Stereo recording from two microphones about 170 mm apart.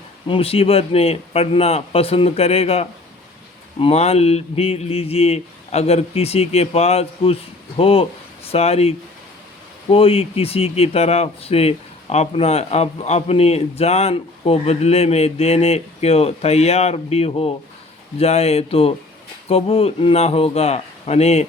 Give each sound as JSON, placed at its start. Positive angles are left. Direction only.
{"t": 0.3, "sound": "speech", "side_deg": 35}